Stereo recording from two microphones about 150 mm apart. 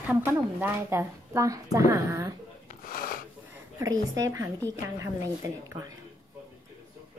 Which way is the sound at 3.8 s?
25° right (ahead or behind).